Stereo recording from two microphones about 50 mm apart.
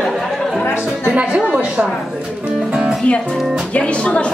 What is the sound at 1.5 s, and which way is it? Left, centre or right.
Speech, centre.